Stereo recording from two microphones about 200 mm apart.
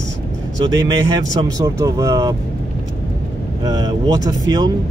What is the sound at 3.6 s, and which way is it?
Speech, 20° right (ahead or behind).